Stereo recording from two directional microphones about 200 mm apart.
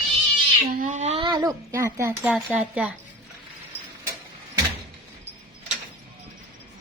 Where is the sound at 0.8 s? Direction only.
35° right (ahead or behind); by 2.9 s 5° right (ahead or behind).